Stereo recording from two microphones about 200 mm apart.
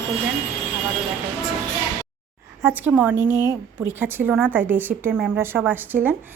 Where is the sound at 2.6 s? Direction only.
10° right (ahead or behind).